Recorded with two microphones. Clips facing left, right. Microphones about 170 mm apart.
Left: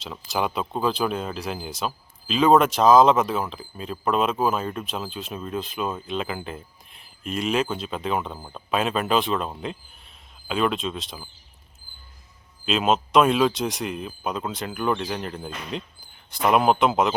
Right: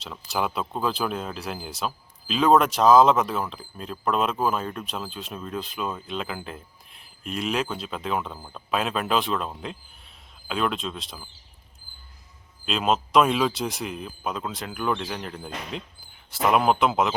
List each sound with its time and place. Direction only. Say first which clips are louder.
0.0 s speech: left 1 dB; centre (ahead or behind)
8.4 s speech: left 2 dB; 15° left (ahead or behind)
8.7 s speech: left 2 dB; centre (ahead or behind)
12.6 s speech: left 2 dB; centre (ahead or behind)